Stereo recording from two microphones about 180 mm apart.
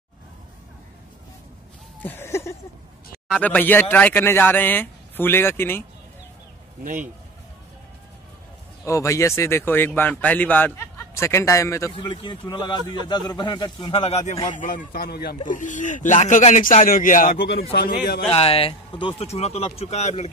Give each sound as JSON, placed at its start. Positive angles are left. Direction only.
{"t": 2.0, "sound": "a sound", "side_deg": 15}
{"t": 3.3, "sound": "speech", "side_deg": 5}
{"t": 8.8, "sound": "speech", "side_deg": 15}
{"t": 11.9, "sound": "speech", "side_deg": 30}
{"t": 14.5, "sound": "speech", "side_deg": 45}
{"t": 15.4, "sound": "speech", "side_deg": 45}
{"t": 17.7, "sound": "speech", "side_deg": 60}
{"t": 18.3, "sound": "speech", "side_deg": 30}